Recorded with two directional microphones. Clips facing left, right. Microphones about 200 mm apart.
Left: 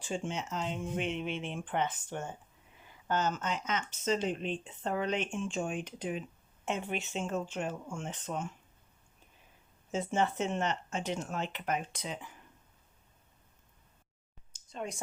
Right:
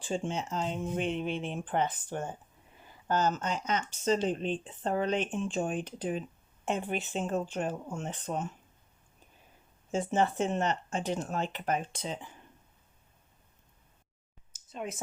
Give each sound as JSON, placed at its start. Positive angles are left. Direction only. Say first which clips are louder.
{"t": 0.0, "sound": "speech", "louder": "right 3 dB", "side_deg": -35}
{"t": 9.9, "sound": "speech", "louder": "right 3 dB", "side_deg": -35}
{"t": 14.7, "sound": "speech", "louder": "right 1 dB", "side_deg": -5}